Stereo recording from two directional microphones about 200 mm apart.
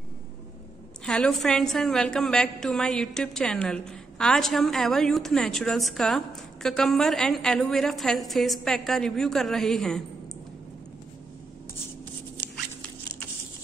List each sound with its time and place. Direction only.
1.0 s a woman's voice: centre (ahead or behind)